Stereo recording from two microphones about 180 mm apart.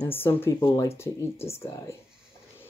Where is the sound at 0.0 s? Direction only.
10° left (ahead or behind).